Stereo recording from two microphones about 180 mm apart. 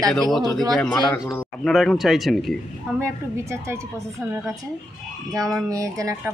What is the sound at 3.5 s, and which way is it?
Speech, 15° right (ahead or behind).